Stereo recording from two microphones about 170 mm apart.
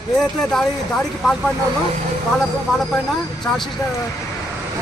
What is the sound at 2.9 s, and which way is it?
Speech, centre (ahead or behind).